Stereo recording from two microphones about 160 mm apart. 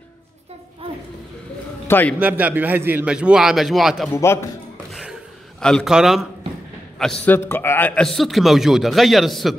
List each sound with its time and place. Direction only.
1.9 s a man's voice: 10° left (ahead or behind)
2.1 s a man's voice: 10° right (ahead or behind)
4.1 s a man's voice: 15° left (ahead or behind)
5.6 s a man's voice: 5° left (ahead or behind)
7.2 s a man's voice: 15° left (ahead or behind)